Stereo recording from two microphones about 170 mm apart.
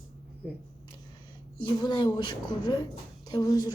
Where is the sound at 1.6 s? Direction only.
25° left (ahead or behind).